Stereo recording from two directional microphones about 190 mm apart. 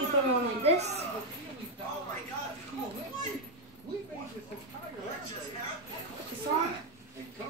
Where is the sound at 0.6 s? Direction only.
35° right (ahead or behind).